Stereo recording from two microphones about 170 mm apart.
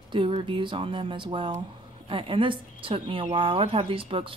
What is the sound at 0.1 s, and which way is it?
A woman's voice, 30° right (ahead or behind).